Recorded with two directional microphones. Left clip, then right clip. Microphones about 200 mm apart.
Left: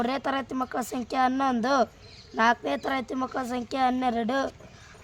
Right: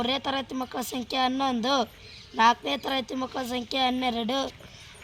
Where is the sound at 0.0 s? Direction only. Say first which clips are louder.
Even; 40° left (ahead or behind).